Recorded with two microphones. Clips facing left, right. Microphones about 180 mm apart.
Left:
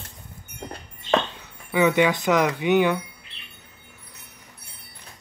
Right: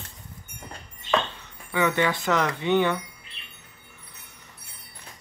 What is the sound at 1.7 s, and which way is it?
Chime, 15° left (ahead or behind).